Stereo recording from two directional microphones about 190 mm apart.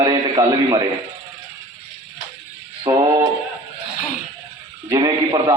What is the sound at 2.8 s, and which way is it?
Speech, 20° right (ahead or behind).